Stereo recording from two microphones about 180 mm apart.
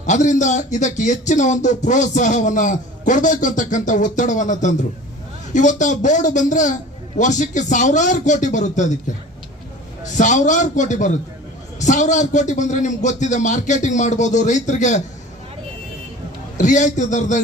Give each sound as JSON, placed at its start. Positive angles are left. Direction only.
{"t": 0.0, "sound": "speech", "side_deg": 40}
{"t": 10.1, "sound": "speech", "side_deg": 45}
{"t": 16.6, "sound": "speech", "side_deg": 45}